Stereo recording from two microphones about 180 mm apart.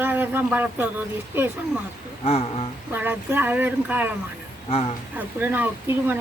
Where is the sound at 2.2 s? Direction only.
35° left (ahead or behind).